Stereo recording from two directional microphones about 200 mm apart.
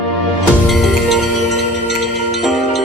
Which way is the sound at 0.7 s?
Centre (ahead or behind).